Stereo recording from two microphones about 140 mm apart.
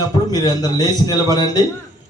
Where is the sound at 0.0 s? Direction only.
25° left (ahead or behind).